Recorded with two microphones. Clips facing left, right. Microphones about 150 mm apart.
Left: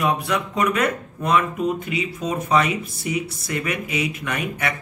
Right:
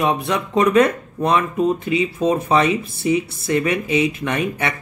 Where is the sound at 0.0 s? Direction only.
25° right (ahead or behind).